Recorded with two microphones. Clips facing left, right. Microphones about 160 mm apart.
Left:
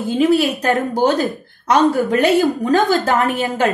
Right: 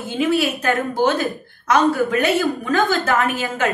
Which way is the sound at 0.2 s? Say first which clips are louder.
Left 3 dB; 40° left (ahead or behind).